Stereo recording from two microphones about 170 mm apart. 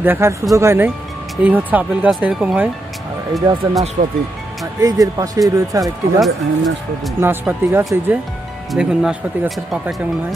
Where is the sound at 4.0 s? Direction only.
45° right (ahead or behind).